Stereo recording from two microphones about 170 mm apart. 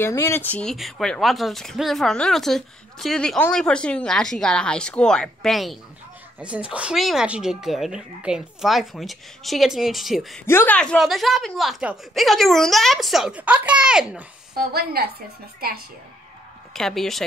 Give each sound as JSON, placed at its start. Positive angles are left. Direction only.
{"t": 0.0, "sound": "speech", "side_deg": 15}
{"t": 10.4, "sound": "speech", "side_deg": 15}
{"t": 14.7, "sound": "a woman's voice", "side_deg": -65}
{"t": 16.7, "sound": "speech", "side_deg": 0}